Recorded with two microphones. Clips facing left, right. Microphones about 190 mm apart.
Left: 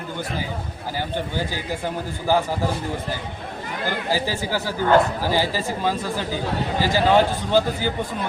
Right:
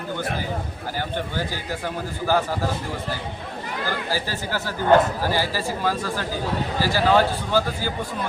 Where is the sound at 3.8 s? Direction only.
15° left (ahead or behind).